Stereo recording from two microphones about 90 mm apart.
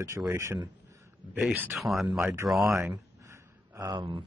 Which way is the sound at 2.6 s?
30° right (ahead or behind).